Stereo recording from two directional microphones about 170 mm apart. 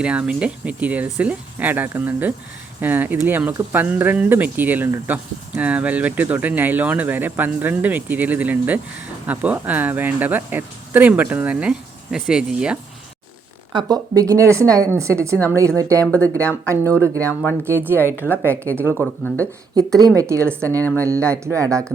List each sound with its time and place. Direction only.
0.0 s speech: 5° right (ahead or behind)
13.7 s speech: 20° right (ahead or behind)
16.0 s speech: 10° left (ahead or behind)
17.6 s speech: 15° right (ahead or behind)
18.2 s speech: 10° left (ahead or behind)
18.6 s speech: 15° right (ahead or behind)
18.9 s speech: 10° left (ahead or behind)
19.7 s speech: 20° right (ahead or behind)
20.5 s speech: 5° left (ahead or behind)
21.2 s speech: 15° right (ahead or behind)
21.7 s speech: 5° left (ahead or behind)